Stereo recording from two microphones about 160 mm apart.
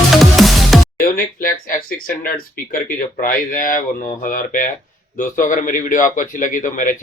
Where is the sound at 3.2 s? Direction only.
60° left (ahead or behind).